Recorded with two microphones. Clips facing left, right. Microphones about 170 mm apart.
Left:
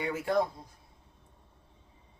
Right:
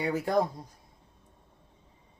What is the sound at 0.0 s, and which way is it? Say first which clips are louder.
Speech: right 2 dB; 40° right (ahead or behind).